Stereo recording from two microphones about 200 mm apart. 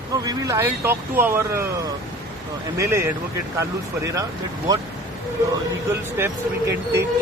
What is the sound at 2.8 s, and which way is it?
Speech, 15° right (ahead or behind).